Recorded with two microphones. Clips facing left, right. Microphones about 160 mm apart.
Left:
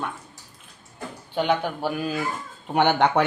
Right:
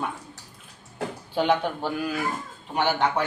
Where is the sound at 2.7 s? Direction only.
65° left (ahead or behind).